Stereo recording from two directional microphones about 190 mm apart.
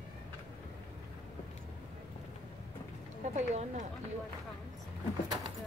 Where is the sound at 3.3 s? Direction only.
40° right (ahead or behind).